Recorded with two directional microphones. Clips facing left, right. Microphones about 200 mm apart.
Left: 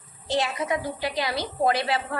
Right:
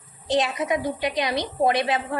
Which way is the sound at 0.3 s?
20° right (ahead or behind).